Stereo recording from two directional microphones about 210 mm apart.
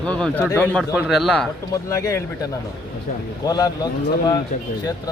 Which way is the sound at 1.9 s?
15° left (ahead or behind).